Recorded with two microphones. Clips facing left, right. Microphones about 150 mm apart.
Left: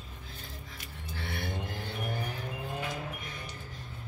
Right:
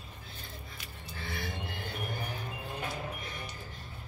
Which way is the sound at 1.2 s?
60° left (ahead or behind).